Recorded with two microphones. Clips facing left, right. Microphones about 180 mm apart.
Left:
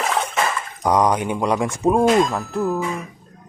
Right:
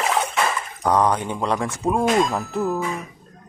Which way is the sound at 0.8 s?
15° left (ahead or behind).